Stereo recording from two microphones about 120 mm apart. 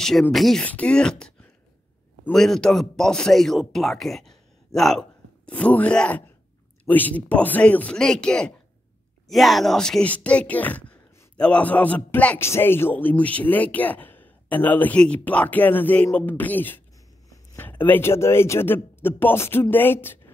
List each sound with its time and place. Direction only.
0.3 s speech: centre (ahead or behind)
5.5 s a man's voice: 10° left (ahead or behind)